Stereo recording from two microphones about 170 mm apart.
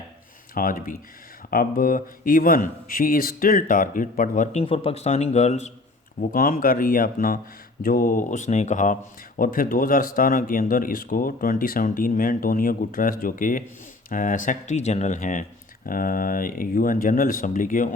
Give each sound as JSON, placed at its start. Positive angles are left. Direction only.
{"t": 0.5, "sound": "speech", "side_deg": 55}
{"t": 4.6, "sound": "speech", "side_deg": 35}
{"t": 6.1, "sound": "speech", "side_deg": 55}